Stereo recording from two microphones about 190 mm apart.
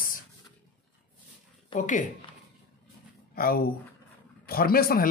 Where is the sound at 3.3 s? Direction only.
50° left (ahead or behind).